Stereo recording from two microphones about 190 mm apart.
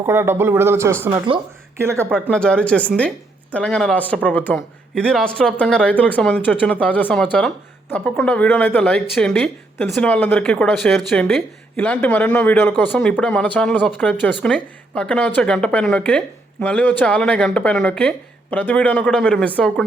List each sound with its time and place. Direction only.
0.0 s speech: 15° right (ahead or behind)
1.3 s speech: 30° right (ahead or behind)
1.8 s speech: 15° right (ahead or behind)
2.0 s speech: 5° left (ahead or behind)